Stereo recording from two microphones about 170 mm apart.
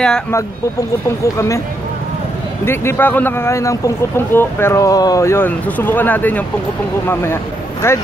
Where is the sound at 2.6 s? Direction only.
15° left (ahead or behind).